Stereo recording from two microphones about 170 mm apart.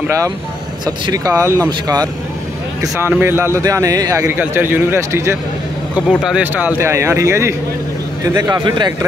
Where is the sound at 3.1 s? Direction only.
15° right (ahead or behind).